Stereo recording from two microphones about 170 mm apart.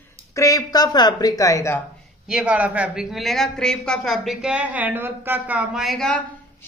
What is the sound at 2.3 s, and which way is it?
A woman's voice, 10° right (ahead or behind).